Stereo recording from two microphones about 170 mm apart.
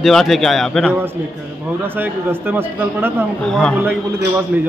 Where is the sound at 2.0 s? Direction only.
10° right (ahead or behind).